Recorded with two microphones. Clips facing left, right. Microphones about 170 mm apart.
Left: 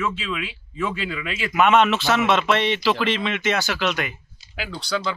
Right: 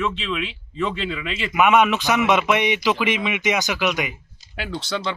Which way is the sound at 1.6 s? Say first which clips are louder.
Even; 10° right (ahead or behind).